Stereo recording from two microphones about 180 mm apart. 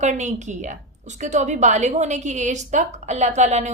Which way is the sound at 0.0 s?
40° right (ahead or behind).